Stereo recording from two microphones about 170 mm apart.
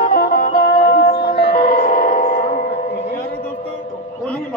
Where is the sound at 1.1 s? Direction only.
50° left (ahead or behind).